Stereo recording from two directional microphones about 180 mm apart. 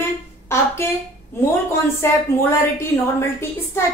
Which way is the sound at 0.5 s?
15° left (ahead or behind).